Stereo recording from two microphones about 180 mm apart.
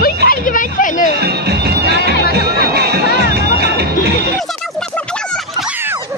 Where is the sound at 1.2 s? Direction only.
65° right (ahead or behind).